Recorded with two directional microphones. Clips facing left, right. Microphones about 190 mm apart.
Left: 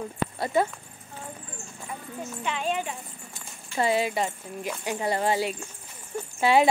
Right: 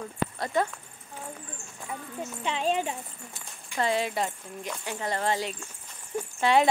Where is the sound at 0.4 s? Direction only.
5° left (ahead or behind).